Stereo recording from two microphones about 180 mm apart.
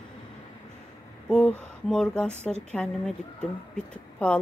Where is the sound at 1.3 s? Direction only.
5° left (ahead or behind).